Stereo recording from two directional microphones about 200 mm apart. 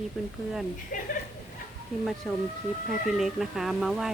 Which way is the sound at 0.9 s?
40° left (ahead or behind).